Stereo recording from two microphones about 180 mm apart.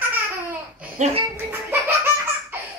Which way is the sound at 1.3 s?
15° right (ahead or behind).